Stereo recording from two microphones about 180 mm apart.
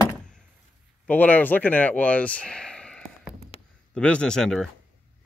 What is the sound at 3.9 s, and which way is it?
Speech, 5° left (ahead or behind).